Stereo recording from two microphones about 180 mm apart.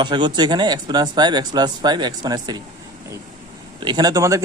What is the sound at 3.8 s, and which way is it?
Speech, 25° right (ahead or behind).